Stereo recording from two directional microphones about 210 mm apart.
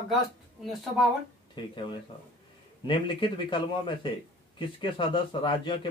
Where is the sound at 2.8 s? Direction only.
25° left (ahead or behind).